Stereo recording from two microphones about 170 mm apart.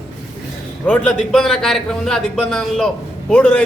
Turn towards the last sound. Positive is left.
turn(degrees=5)  # may be behind; listen again after turning